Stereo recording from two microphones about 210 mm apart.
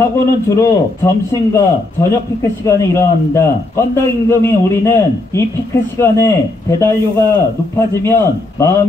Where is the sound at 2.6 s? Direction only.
15° left (ahead or behind).